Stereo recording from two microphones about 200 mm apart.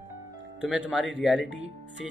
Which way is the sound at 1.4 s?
65° left (ahead or behind).